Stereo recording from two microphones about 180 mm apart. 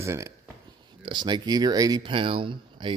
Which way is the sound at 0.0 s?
15° right (ahead or behind).